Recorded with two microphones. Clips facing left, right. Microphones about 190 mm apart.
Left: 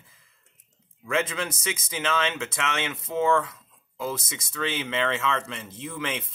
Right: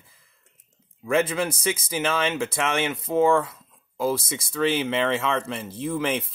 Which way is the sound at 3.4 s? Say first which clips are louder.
Right 3 dB; 30° right (ahead or behind).